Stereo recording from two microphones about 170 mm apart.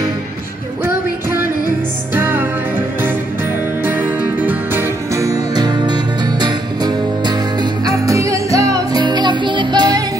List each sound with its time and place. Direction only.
2.1 s music: 10° right (ahead or behind)
3.8 s music: 10° right (ahead or behind)